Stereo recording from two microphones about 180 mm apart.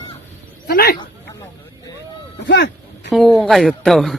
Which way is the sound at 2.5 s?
80° left.